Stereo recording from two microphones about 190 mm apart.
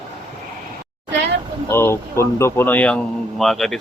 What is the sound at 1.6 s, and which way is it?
Speech, 15° left (ahead or behind).